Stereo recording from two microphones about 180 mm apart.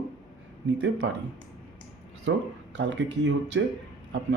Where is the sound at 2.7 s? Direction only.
85° right.